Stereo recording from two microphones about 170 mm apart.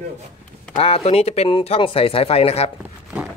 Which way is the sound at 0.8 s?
35° left (ahead or behind).